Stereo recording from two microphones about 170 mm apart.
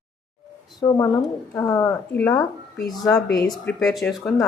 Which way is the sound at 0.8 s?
20° left (ahead or behind).